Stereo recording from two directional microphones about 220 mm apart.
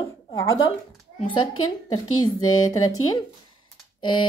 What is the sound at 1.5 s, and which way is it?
Speech, 75° left (ahead or behind).